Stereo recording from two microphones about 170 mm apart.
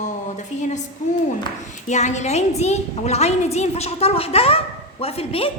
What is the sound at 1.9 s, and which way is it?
A woman's voice, 45° left (ahead or behind).